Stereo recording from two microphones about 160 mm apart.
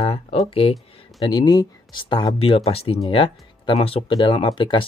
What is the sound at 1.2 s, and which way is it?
Speech, 25° left (ahead or behind).